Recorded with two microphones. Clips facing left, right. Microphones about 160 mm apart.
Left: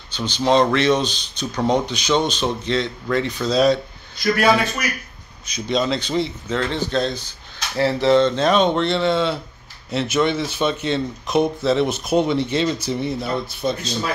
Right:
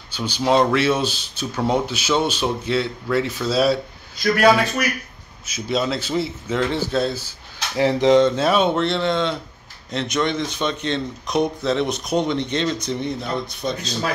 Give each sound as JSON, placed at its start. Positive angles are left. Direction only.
{"t": 0.1, "sound": "a man's voice", "side_deg": -10}
{"t": 5.5, "sound": "a man's voice", "side_deg": -5}